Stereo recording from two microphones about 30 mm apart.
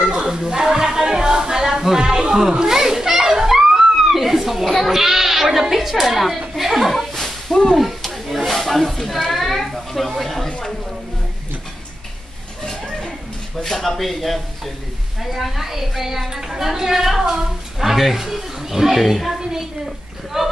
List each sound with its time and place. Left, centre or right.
0.0 s music: right
2.5 s children playing: centre
4.6 s bleat: centre
4.9 s speech: centre
6.5 s a sound: centre
7.0 s a sound: centre
8.5 s snake: centre
9.1 s a sound: centre
12.6 s a sound: centre
13.7 s a woman's voice: centre
17.8 s speech: centre
20.3 s a woman's voice: centre